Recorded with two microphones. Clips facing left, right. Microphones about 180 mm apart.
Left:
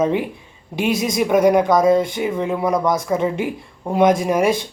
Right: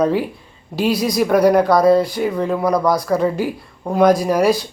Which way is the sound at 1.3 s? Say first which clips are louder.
Right 1 dB; centre (ahead or behind).